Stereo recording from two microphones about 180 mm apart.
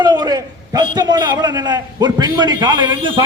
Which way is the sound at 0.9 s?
20° right (ahead or behind).